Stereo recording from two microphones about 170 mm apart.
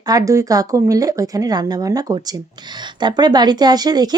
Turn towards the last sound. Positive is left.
turn(degrees=-25)  # may be behind; listen again after turning